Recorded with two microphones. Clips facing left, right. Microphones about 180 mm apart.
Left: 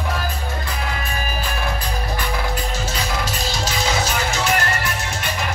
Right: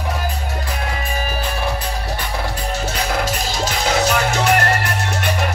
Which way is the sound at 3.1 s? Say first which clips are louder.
Right 3 dB; 50° right (ahead or behind).